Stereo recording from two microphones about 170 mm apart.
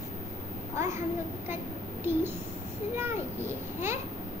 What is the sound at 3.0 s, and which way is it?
A child's voice, 15° right (ahead or behind).